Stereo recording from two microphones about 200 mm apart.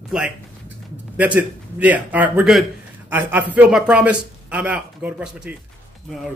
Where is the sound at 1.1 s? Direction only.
5° right (ahead or behind).